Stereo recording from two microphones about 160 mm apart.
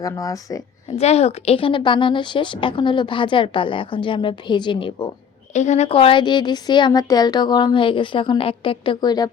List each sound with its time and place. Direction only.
0.0 s speech: 20° left (ahead or behind)
0.9 s a woman's voice: 40° left (ahead or behind)
5.5 s a woman's voice: 45° left (ahead or behind); by 9.3 s 25° left (ahead or behind)